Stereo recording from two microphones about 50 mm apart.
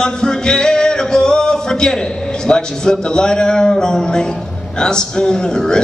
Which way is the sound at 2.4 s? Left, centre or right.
Centre.